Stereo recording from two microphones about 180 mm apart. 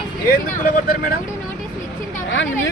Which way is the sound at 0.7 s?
50° left (ahead or behind).